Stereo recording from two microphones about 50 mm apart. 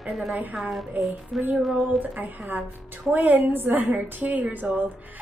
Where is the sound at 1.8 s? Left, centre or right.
Right.